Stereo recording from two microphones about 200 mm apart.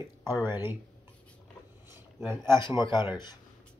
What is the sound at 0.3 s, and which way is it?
Speech, 10° right (ahead or behind).